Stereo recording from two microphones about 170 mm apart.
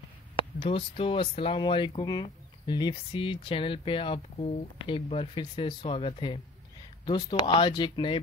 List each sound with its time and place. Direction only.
0.6 s speech: 35° left (ahead or behind)